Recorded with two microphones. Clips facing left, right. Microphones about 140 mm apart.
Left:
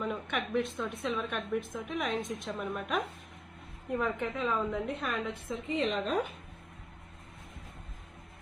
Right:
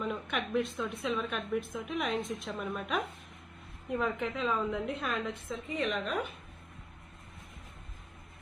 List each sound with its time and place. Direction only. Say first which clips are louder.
0.0 s a woman's voice: even; centre (ahead or behind)
5.5 s a woman's voice: left 5 dB; 15° left (ahead or behind)
5.9 s speech: left 3 dB; 30° left (ahead or behind)